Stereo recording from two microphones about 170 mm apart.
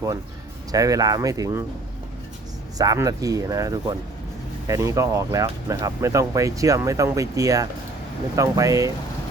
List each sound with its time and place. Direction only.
0.7 s speech: 20° right (ahead or behind)
2.7 s speech: 20° right (ahead or behind)